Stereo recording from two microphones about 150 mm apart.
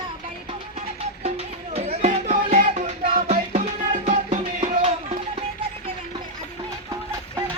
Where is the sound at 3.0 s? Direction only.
45° right (ahead or behind).